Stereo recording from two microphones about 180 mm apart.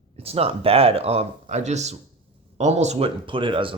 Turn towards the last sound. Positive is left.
turn(degrees=-30)  # may be behind; listen again after turning